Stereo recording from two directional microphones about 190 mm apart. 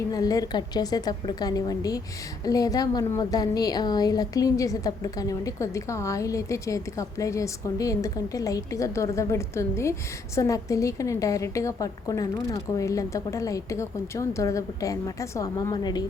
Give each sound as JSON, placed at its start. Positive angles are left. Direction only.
{"t": 0.1, "sound": "a woman's voice", "side_deg": 20}